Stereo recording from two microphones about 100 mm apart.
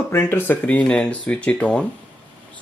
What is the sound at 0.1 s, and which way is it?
Speech, 25° left (ahead or behind).